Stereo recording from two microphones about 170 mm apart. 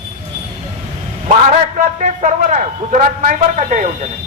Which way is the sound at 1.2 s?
45° right (ahead or behind).